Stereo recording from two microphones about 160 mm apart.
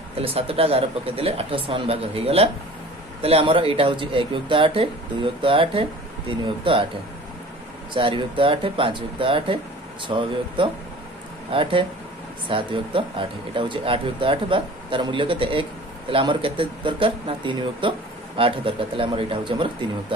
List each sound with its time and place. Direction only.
0.2 s speech: 35° right (ahead or behind)
7.9 s speech: 35° right (ahead or behind)